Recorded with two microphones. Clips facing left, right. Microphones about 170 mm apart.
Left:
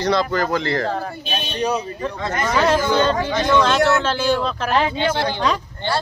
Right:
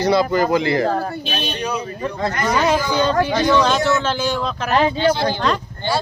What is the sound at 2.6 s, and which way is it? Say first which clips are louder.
Speech: left 2 dB; 5° right (ahead or behind).